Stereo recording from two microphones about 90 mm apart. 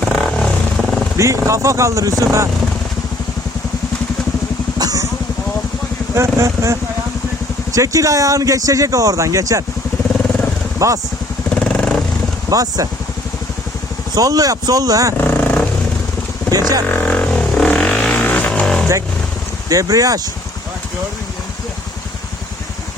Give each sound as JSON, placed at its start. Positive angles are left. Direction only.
{"t": 0.0, "sound": "vehicle", "side_deg": 5}
{"t": 1.1, "sound": "speech", "side_deg": -35}
{"t": 4.8, "sound": "a sound", "side_deg": -45}
{"t": 6.1, "sound": "speech", "side_deg": -35}
{"t": 10.8, "sound": "speech", "side_deg": -35}
{"t": 11.5, "sound": "vehicle", "side_deg": 15}
{"t": 12.5, "sound": "speech", "side_deg": -40}
{"t": 14.2, "sound": "speech", "side_deg": -40}
{"t": 15.2, "sound": "vehicle", "side_deg": 20}
{"t": 16.5, "sound": "speech", "side_deg": -40}
{"t": 16.9, "sound": "a sound", "side_deg": 20}
{"t": 17.7, "sound": "vehicle", "side_deg": 10}
{"t": 19.6, "sound": "speech", "side_deg": -40}